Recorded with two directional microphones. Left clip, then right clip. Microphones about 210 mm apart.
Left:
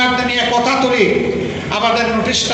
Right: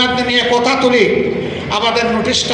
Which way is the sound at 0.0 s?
55° right (ahead or behind).